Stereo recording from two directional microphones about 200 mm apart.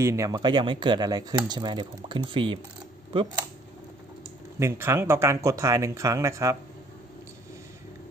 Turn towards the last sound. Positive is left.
turn(degrees=-15)  # may be behind; listen again after turning